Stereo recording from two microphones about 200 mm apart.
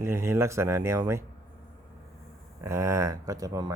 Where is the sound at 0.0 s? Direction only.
15° right (ahead or behind).